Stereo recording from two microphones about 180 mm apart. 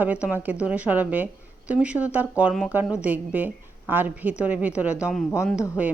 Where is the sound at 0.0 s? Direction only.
10° right (ahead or behind).